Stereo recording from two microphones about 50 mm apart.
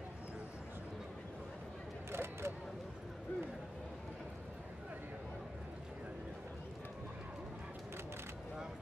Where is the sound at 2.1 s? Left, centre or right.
Right.